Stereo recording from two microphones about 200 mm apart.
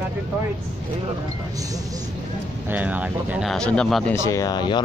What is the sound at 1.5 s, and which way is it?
Speech, 15° right (ahead or behind).